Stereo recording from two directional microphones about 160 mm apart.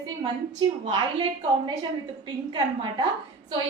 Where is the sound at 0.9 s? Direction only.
35° right (ahead or behind).